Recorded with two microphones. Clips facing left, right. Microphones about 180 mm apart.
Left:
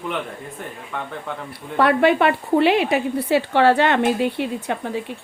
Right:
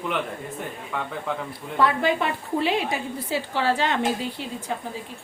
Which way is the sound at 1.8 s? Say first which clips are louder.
Left 6 dB; 70° left (ahead or behind).